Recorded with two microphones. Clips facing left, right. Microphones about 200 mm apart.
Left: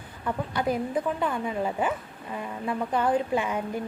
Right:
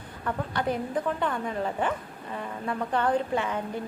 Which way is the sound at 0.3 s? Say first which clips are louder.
Left 1 dB; 10° left (ahead or behind).